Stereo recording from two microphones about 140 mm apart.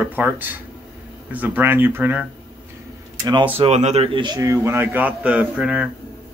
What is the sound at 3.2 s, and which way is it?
Speech, 35° right (ahead or behind).